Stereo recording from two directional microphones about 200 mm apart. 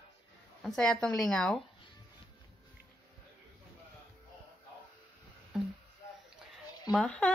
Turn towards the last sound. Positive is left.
turn(degrees=5)  # may be behind; listen again after turning